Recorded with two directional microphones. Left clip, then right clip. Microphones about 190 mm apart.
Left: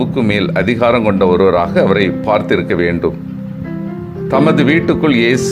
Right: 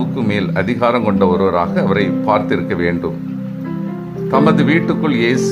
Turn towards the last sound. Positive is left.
turn(degrees=20)  # may be behind; listen again after turning